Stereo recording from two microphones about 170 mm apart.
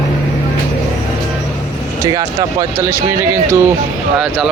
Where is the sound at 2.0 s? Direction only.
20° right (ahead or behind).